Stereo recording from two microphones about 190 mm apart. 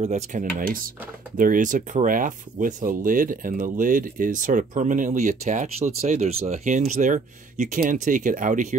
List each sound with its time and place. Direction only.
0.0 s speech: 40° right (ahead or behind)